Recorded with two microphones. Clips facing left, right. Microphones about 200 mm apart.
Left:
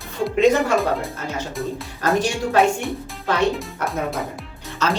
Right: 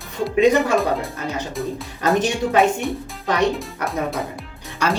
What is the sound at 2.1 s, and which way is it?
Speech, 20° right (ahead or behind).